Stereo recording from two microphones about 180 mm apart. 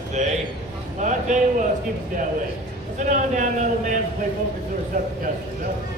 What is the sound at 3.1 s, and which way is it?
Speech, 45° right (ahead or behind).